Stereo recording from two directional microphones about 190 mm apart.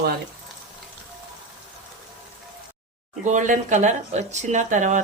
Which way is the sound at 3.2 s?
40° right (ahead or behind).